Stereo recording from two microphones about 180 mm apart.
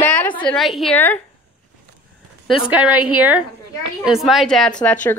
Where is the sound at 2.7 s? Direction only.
10° right (ahead or behind).